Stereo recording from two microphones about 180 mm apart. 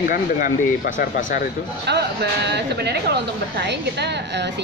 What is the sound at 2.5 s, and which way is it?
A woman's voice, 65° right (ahead or behind).